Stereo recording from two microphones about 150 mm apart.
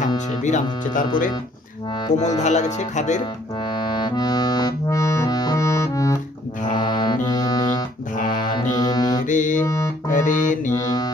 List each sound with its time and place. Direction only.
0.4 s speech: 55° left (ahead or behind)
2.1 s speech: 50° left (ahead or behind)
3.7 s accordion: 30° left (ahead or behind)
6.7 s music: 30° left (ahead or behind)
9.2 s mantra: 60° left (ahead or behind)
9.7 s music: 20° left (ahead or behind)
10.1 s music: 55° left (ahead or behind)
10.8 s mantra: 25° left (ahead or behind)